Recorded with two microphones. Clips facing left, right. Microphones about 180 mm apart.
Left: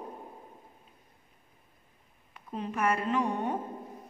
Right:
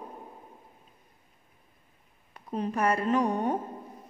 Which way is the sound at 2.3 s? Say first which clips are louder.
Right 5 dB; 40° right (ahead or behind).